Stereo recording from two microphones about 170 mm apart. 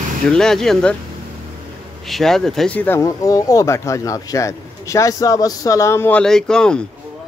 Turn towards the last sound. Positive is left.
turn(degrees=5)  # may be behind; listen again after turning